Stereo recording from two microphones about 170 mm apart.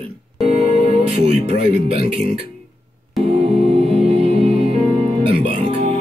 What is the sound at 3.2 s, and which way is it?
Music, 35° right (ahead or behind).